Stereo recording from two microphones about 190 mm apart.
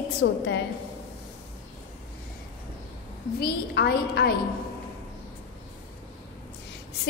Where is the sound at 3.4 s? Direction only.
60° left (ahead or behind).